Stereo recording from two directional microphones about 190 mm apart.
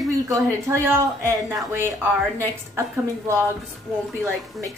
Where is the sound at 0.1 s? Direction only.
15° right (ahead or behind).